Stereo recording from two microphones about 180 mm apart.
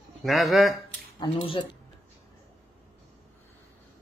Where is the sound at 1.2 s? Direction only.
30° left (ahead or behind).